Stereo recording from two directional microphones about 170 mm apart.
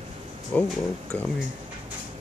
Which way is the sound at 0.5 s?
10° left (ahead or behind).